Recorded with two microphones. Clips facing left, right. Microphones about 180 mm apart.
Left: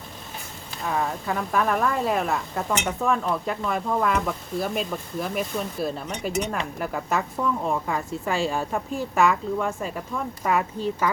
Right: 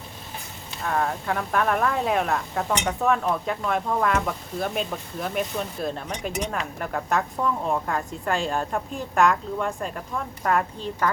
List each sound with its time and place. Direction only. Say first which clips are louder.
0.8 s speech: right 1 dB; centre (ahead or behind)